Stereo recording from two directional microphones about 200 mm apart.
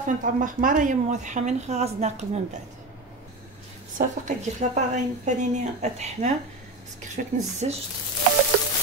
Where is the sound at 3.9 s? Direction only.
35° right (ahead or behind).